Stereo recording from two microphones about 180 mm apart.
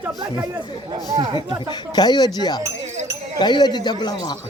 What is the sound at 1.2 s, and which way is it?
Speech, 20° right (ahead or behind).